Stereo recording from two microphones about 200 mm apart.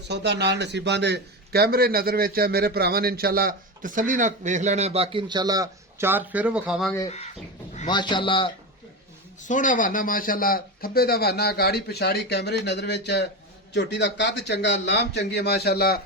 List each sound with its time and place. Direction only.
0.1 s a man's voice: 55° right (ahead or behind); by 6.9 s 5° right (ahead or behind)
7.9 s speech: 20° left (ahead or behind)
9.5 s a man's voice: 40° left (ahead or behind)